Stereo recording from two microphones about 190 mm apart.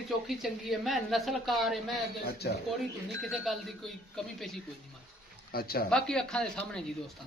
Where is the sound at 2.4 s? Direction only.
60° left (ahead or behind).